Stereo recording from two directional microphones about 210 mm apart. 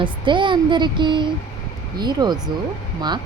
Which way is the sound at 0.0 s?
25° right (ahead or behind).